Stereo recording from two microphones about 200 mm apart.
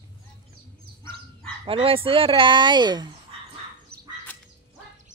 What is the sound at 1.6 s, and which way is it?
Speech, 25° right (ahead or behind).